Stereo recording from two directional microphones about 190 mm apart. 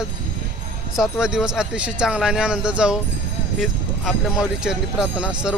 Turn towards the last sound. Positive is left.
turn(degrees=-5)  # may be behind; listen again after turning